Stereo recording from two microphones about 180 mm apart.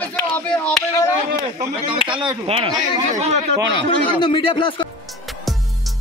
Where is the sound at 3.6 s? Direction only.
80° right.